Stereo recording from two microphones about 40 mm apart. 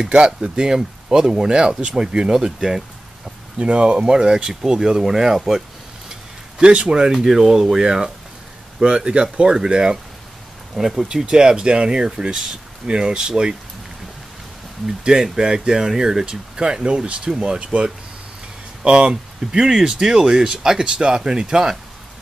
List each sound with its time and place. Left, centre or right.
0.0 s speech: right
3.5 s speech: right; by 5.4 s centre
6.6 s speech: right
10.8 s speech: centre
11.1 s speech: centre
14.9 s speech: centre
18.9 s speech: right